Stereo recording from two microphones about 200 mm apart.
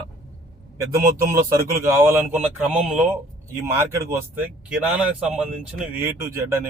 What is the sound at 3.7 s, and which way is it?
Speech, 15° right (ahead or behind).